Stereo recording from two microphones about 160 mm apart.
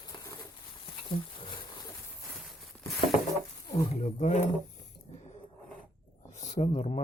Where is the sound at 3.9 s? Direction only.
45° left (ahead or behind).